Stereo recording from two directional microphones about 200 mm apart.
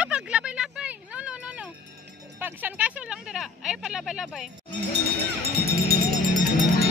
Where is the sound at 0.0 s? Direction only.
5° right (ahead or behind).